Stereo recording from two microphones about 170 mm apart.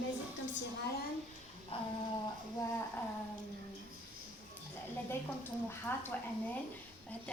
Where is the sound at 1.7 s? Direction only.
35° left (ahead or behind).